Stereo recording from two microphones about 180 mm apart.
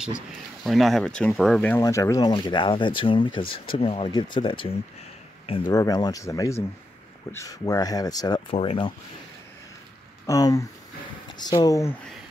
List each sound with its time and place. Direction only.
0.7 s speech: centre (ahead or behind)
1.8 s speech: 15° left (ahead or behind)
10.2 s speech: 20° left (ahead or behind)